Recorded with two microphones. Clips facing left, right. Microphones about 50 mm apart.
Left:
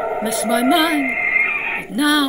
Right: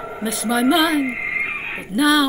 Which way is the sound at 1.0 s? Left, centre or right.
Left.